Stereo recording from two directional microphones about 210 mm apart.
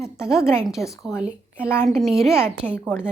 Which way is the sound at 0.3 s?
15° left (ahead or behind).